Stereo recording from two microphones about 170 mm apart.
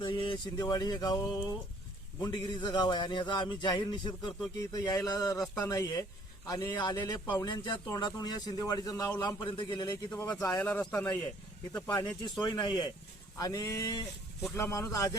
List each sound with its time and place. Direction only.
0.0 s a man's voice: 30° left (ahead or behind)
10.6 s a man's voice: 5° left (ahead or behind)
11.7 s a man's voice: 25° left (ahead or behind)